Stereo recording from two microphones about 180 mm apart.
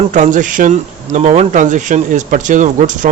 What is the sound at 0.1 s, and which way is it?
Speech, 45° right (ahead or behind).